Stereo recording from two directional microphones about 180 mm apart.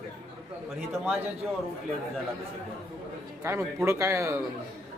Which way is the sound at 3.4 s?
15° right (ahead or behind).